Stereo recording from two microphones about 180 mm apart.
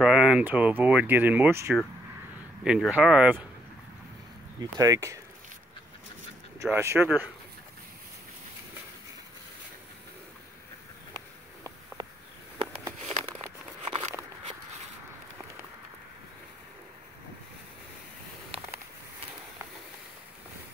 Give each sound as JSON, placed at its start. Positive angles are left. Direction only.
{"t": 0.0, "sound": "speech", "side_deg": -5}
{"t": 4.7, "sound": "speech", "side_deg": -20}
{"t": 6.6, "sound": "speech", "side_deg": -15}
{"t": 13.8, "sound": "a sound", "side_deg": -35}